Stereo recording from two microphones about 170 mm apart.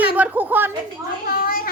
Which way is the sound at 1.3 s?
60° left (ahead or behind).